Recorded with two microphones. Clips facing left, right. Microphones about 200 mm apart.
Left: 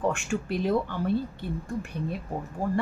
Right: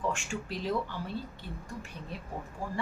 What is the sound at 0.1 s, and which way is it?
A woman's voice, 60° left (ahead or behind).